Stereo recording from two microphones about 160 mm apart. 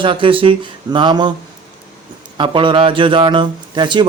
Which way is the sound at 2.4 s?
30° right (ahead or behind).